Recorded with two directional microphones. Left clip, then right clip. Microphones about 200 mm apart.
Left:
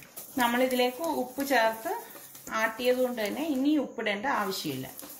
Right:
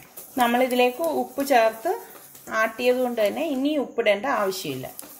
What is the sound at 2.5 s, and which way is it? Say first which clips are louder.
Speech: right 5 dB; 50° right (ahead or behind).